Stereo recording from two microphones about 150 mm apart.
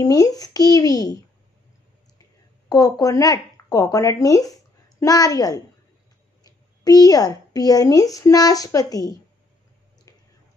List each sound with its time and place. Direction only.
0.0 s a child's voice: 25° left (ahead or behind)
2.7 s a woman's voice: 25° left (ahead or behind)